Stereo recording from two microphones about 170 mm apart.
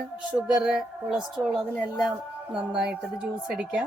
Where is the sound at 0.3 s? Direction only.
5° right (ahead or behind).